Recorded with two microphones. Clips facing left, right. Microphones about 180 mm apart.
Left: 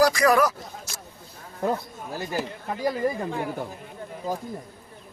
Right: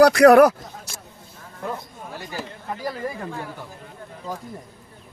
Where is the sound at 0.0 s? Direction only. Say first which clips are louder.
Right 8 dB; 65° right (ahead or behind).